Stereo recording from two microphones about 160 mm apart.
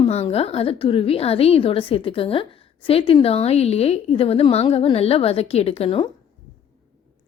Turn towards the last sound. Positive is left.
turn(degrees=35)  # may be behind; listen again after turning